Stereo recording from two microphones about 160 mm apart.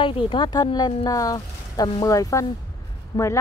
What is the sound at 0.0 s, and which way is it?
Speech, 30° left (ahead or behind).